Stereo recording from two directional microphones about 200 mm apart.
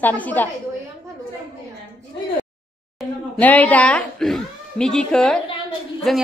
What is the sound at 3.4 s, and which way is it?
A woman's voice, 10° left (ahead or behind).